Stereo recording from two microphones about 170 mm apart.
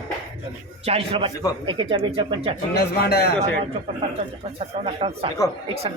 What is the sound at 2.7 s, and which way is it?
Speech, 70° left (ahead or behind).